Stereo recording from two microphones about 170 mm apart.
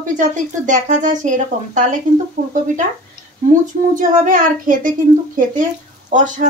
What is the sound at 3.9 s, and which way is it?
Speech, 45° right (ahead or behind).